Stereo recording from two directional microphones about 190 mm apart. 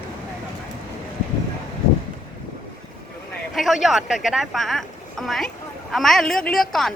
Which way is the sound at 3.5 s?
Centre (ahead or behind).